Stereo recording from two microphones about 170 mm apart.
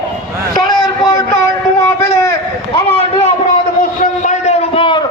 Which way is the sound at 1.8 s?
20° left (ahead or behind).